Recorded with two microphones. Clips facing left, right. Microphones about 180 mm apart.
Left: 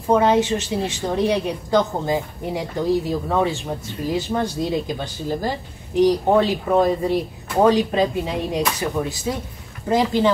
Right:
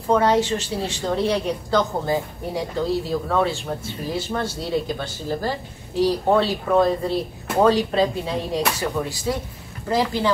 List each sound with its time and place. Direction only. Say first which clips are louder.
0.0 s speech: left 2 dB; 15° left (ahead or behind)